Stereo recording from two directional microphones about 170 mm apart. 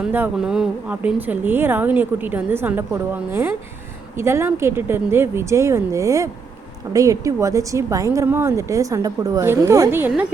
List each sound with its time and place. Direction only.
0.0 s a woman's voice: 10° right (ahead or behind)